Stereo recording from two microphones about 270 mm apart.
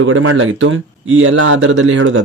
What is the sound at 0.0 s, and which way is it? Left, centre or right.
Speech, right.